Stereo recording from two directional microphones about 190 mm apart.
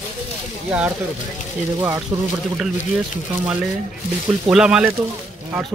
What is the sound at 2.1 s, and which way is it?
Speech, 15° right (ahead or behind).